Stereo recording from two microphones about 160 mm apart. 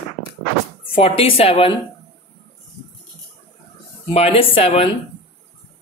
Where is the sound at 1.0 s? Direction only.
35° left (ahead or behind).